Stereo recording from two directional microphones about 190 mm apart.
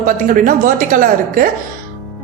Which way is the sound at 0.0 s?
45° right (ahead or behind).